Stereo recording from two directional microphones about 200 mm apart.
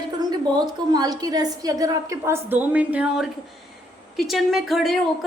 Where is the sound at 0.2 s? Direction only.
20° right (ahead or behind).